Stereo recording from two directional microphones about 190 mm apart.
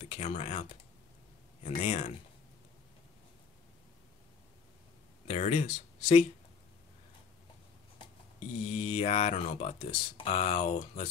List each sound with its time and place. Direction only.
0.0 s speech: 35° left (ahead or behind)
5.2 s speech: 35° left (ahead or behind)
8.6 s speech: 35° left (ahead or behind)